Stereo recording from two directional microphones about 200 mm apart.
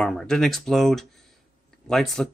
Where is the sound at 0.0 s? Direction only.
Centre (ahead or behind).